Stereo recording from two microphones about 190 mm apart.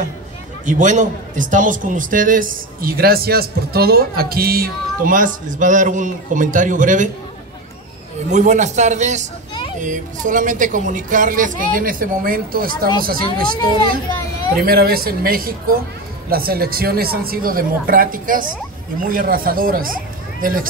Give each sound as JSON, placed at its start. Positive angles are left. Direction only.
{"t": 0.7, "sound": "a man's voice", "side_deg": -40}
{"t": 8.3, "sound": "a man's voice", "side_deg": -40}
{"t": 14.6, "sound": "a man's voice", "side_deg": -50}